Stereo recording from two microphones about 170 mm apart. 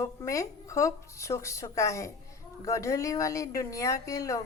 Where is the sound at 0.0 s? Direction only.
20° left (ahead or behind).